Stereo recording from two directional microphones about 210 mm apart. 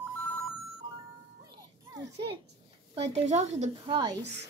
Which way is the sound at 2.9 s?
30° right (ahead or behind).